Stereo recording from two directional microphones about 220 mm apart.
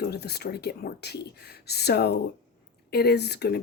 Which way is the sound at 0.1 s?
45° left (ahead or behind).